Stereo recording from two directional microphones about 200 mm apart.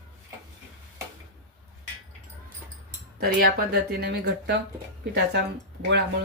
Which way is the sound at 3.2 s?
50° right (ahead or behind).